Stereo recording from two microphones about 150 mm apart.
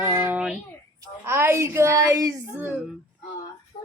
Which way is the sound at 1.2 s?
15° right (ahead or behind).